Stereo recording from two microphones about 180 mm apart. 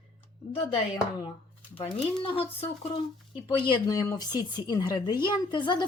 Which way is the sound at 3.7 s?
20° left (ahead or behind).